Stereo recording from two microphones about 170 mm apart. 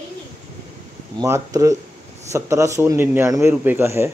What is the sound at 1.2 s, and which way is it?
A man's voice, 20° right (ahead or behind).